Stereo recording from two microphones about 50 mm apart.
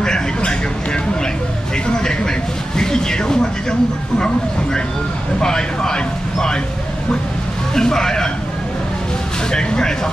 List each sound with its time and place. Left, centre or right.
0.0 s vehicle: centre
2.0 s a sound: centre
5.4 s a man's voice: centre
7.7 s a man's voice: centre
9.5 s a man's voice: centre